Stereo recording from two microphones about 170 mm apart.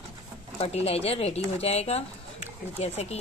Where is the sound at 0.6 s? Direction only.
35° left (ahead or behind).